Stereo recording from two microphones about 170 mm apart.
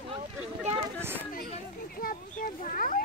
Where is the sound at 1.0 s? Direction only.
15° right (ahead or behind).